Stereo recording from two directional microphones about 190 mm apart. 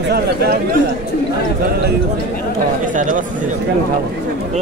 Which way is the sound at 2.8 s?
45° right (ahead or behind).